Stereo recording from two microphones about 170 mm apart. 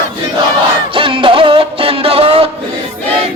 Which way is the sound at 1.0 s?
30° right (ahead or behind).